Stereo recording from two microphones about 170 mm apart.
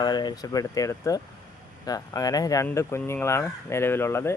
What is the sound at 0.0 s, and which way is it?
Speech, 25° left (ahead or behind).